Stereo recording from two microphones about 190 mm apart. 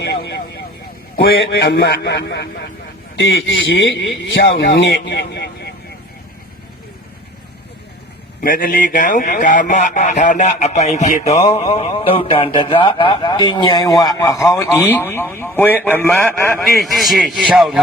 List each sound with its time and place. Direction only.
0.0 s vehicle: 65° left (ahead or behind)
1.4 s speech: 70° left (ahead or behind)
3.2 s a man's voice: 80° left
4.3 s speech: 65° left (ahead or behind)
8.4 s a man's voice: 50° left (ahead or behind); by 17.8 s centre (ahead or behind)